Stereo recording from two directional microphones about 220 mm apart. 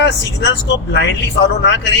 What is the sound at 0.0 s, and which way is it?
A man's voice, 50° left (ahead or behind).